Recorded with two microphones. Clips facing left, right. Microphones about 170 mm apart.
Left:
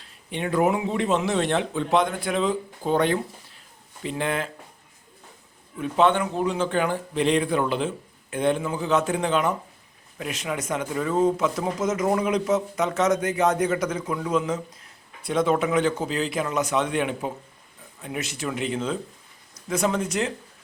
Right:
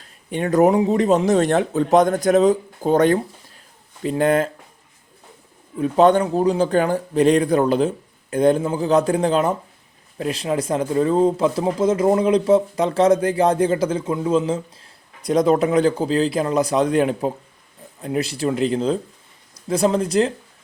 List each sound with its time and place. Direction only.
0.0 s speech: 45° right (ahead or behind)
5.8 s speech: 40° right (ahead or behind)
15.2 s speech: 40° right (ahead or behind)